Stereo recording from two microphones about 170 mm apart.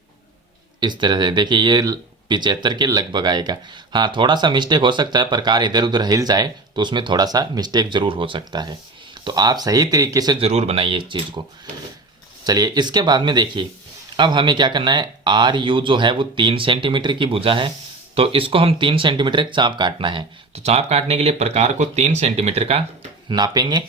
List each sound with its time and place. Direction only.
0.8 s speech: 25° right (ahead or behind)
10.4 s speech: 40° right (ahead or behind)
12.5 s speech: 20° right (ahead or behind); by 22.8 s 40° right (ahead or behind)
23.3 s speech: 25° right (ahead or behind)